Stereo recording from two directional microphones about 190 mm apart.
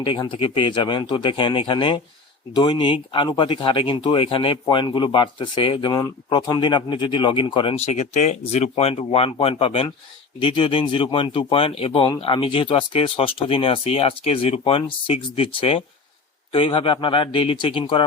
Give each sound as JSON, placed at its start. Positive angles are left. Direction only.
{"t": 0.0, "sound": "speech", "side_deg": 25}